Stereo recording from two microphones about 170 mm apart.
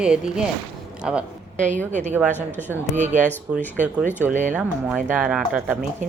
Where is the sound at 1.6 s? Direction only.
45° right (ahead or behind).